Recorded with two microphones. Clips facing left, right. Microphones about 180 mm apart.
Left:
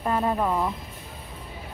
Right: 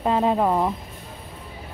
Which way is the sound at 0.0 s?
20° right (ahead or behind).